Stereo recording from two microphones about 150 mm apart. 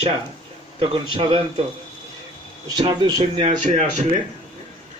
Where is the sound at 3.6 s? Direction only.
50° right (ahead or behind).